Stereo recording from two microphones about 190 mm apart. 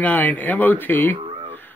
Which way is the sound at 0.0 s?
10° left (ahead or behind).